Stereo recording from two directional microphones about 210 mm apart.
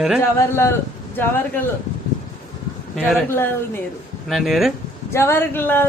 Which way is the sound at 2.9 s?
Centre (ahead or behind).